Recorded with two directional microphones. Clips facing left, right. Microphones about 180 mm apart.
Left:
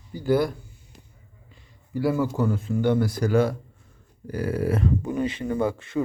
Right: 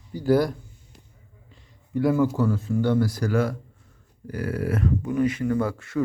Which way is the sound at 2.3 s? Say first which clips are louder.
Right 1 dB; 20° left (ahead or behind).